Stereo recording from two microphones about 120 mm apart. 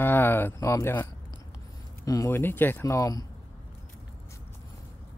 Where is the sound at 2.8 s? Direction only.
30° left (ahead or behind).